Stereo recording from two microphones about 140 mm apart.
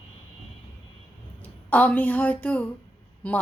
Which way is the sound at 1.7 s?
10° left (ahead or behind).